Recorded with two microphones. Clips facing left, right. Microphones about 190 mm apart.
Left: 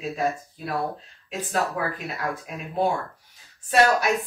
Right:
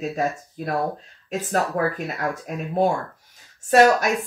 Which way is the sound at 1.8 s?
45° right (ahead or behind).